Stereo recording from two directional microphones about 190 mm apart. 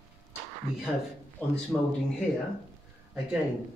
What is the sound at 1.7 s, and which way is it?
Speech, 5° left (ahead or behind).